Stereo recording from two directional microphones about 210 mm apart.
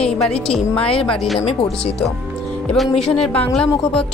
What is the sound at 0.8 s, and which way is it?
Speech, 25° left (ahead or behind).